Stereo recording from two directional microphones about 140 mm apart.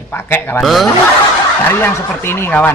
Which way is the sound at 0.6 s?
Centre (ahead or behind).